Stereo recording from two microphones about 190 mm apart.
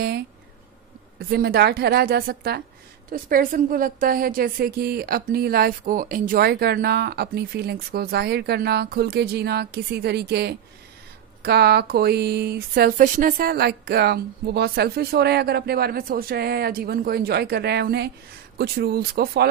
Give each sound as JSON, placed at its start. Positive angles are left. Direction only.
{"t": 1.3, "sound": "a woman's voice", "side_deg": -55}